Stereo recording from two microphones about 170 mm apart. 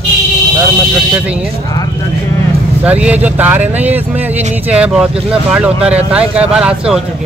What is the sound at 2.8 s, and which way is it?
A man's voice, 10° right (ahead or behind).